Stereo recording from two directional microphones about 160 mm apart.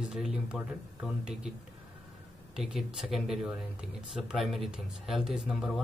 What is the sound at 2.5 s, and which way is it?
Speech, 5° right (ahead or behind).